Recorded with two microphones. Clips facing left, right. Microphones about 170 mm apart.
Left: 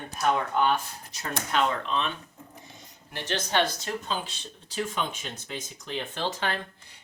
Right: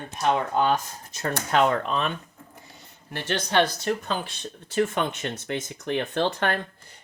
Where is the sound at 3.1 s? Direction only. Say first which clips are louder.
Right 4 dB; 60° right (ahead or behind).